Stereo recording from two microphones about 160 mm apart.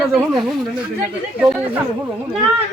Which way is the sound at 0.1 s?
Centre (ahead or behind).